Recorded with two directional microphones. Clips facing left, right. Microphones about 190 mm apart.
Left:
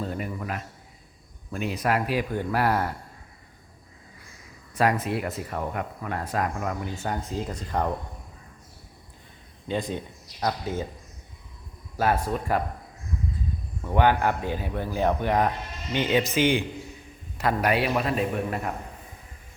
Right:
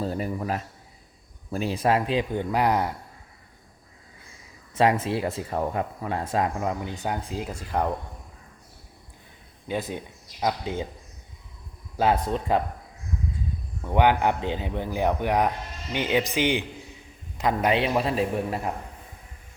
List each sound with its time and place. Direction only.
0.0 s a man's voice: 35° right (ahead or behind); by 2.9 s 15° right (ahead or behind)
4.7 s speech: 25° right (ahead or behind); by 7.9 s 10° right (ahead or behind)
9.6 s speech: 10° right (ahead or behind)
11.9 s speech: 20° right (ahead or behind)
13.8 s speech: 15° right (ahead or behind)